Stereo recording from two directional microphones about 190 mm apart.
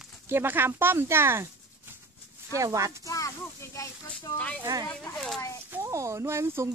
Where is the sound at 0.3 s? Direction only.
10° right (ahead or behind).